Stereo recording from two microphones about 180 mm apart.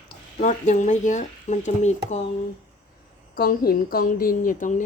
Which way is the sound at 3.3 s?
55° left (ahead or behind).